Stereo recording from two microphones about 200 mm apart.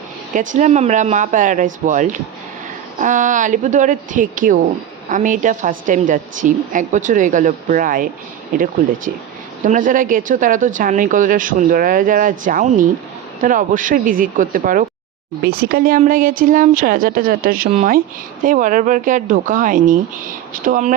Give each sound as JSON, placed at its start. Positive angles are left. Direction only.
{"t": 0.3, "sound": "speech", "side_deg": -40}